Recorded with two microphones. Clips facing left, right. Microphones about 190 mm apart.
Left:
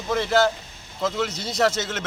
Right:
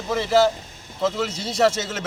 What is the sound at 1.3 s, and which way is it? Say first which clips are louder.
Speech: right 2 dB; 30° right (ahead or behind).